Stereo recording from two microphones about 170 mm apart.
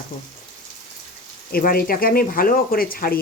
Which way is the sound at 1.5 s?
60° left (ahead or behind).